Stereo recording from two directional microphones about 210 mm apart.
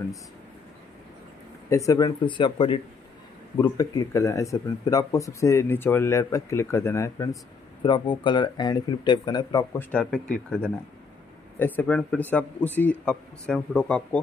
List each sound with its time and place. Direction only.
1.7 s speech: 15° left (ahead or behind)
9.8 s speech: 5° left (ahead or behind)
11.5 s speech: 10° left (ahead or behind)